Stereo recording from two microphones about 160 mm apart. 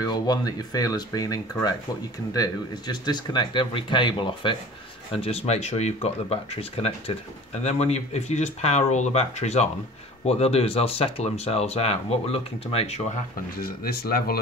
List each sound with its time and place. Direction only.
0.0 s speech: 25° left (ahead or behind); by 13.0 s 40° left (ahead or behind)
13.6 s speech: 75° left (ahead or behind)